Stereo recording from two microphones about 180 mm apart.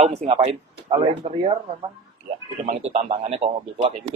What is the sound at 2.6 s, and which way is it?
A man's voice, 35° right (ahead or behind).